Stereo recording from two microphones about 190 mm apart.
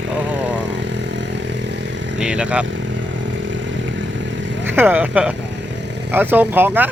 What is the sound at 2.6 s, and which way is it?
Vehicle, 75° right (ahead or behind).